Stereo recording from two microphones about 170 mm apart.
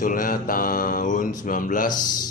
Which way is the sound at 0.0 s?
50° left (ahead or behind).